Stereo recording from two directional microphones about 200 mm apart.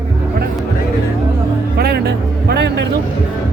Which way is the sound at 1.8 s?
55° right (ahead or behind).